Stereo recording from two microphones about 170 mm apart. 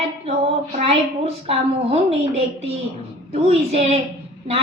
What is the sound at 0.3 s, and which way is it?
A woman's voice, 35° right (ahead or behind).